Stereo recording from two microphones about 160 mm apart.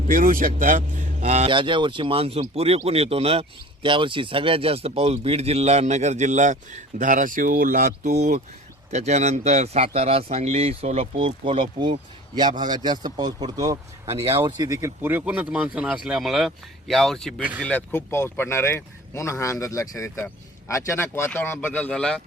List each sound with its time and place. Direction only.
0.1 s speech: 60° right (ahead or behind)
1.5 s speech: 30° right (ahead or behind); by 8.1 s 60° right (ahead or behind)
8.1 s speech: 45° right (ahead or behind); by 22.2 s 5° left (ahead or behind)